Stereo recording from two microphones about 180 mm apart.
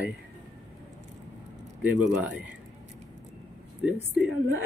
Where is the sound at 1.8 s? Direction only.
5° right (ahead or behind).